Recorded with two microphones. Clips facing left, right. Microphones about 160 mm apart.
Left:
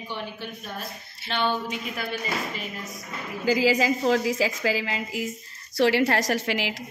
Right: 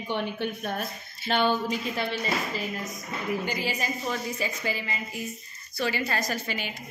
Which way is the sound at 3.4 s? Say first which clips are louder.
Left 9 dB; 90° left.